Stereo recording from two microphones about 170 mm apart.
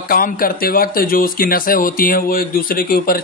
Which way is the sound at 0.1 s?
60° left (ahead or behind).